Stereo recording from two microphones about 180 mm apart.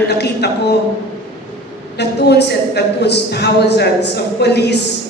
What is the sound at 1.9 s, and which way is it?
A man's voice, 70° left (ahead or behind).